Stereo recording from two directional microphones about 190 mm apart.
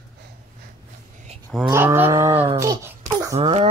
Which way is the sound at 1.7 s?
15° right (ahead or behind).